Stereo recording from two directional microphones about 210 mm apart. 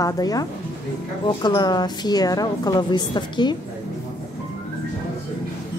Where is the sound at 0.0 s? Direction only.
15° left (ahead or behind).